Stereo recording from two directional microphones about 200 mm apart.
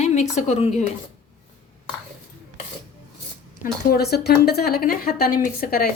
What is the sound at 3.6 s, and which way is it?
A woman's voice, 50° left (ahead or behind).